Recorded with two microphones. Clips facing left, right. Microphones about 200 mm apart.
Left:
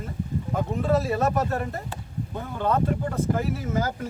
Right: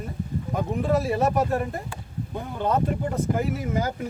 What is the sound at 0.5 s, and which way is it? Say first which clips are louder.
Speech: even; 15° right (ahead or behind).